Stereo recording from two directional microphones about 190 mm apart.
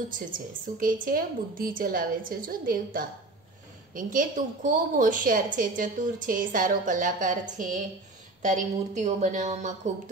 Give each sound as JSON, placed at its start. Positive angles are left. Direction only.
{"t": 0.7, "sound": "a woman's voice", "side_deg": -45}